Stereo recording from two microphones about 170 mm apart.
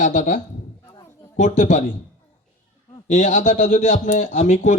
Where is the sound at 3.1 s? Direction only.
45° left (ahead or behind).